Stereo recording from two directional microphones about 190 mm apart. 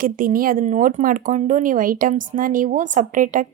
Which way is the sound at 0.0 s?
45° right (ahead or behind).